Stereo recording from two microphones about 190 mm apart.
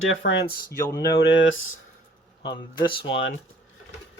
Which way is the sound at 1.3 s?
80° left.